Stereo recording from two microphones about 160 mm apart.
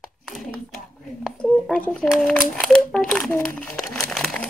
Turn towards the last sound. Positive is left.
turn(degrees=5)  # may be behind; listen again after turning